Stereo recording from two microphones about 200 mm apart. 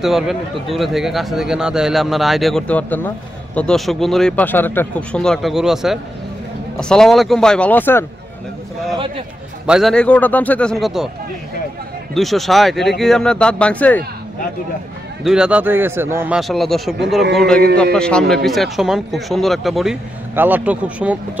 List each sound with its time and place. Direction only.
0.0 s speech: centre (ahead or behind)
8.9 s speech: 25° right (ahead or behind)
9.7 s speech: centre (ahead or behind)
12.1 s speech: centre (ahead or behind)
15.2 s a man's voice: 5° right (ahead or behind)
16.3 s speech: centre (ahead or behind)
17.9 s speech: 5° left (ahead or behind)